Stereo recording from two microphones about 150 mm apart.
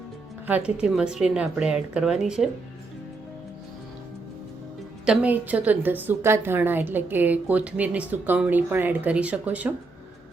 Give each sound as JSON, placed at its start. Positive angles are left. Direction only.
{"t": 0.4, "sound": "speech", "side_deg": -10}
{"t": 5.0, "sound": "a woman's voice", "side_deg": -10}